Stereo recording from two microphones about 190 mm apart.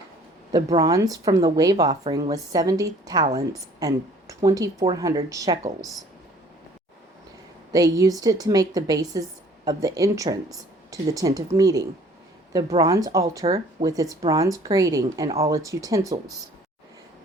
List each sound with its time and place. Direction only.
0.8 s a woman's voice: 20° right (ahead or behind)
7.7 s a woman's voice: 15° right (ahead or behind)